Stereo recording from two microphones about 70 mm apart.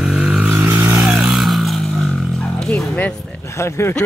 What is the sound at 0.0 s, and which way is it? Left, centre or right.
Vehicle, centre.